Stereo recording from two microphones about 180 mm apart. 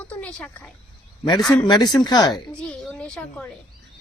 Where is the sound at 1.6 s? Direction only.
25° left (ahead or behind).